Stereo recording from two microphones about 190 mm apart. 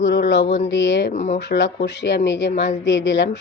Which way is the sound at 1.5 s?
70° left (ahead or behind).